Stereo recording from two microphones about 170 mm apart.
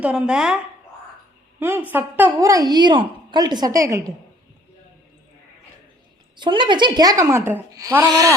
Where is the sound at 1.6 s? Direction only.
15° right (ahead or behind).